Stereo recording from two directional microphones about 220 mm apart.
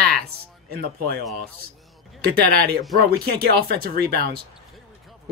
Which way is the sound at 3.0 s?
45° right (ahead or behind).